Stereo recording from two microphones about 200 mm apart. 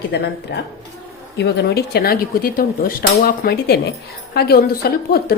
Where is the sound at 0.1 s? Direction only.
60° left (ahead or behind).